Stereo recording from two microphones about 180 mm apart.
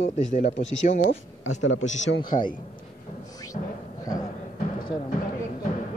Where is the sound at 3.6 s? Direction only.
45° left (ahead or behind).